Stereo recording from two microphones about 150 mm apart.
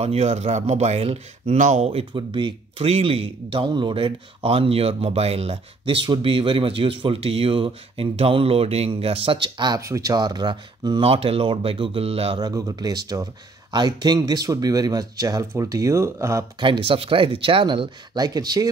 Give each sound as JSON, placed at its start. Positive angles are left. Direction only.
{"t": 0.0, "sound": "speech", "side_deg": -45}
{"t": 1.9, "sound": "a man's voice", "side_deg": -35}
{"t": 12.4, "sound": "speech", "side_deg": -25}
{"t": 16.5, "sound": "a man's voice", "side_deg": -35}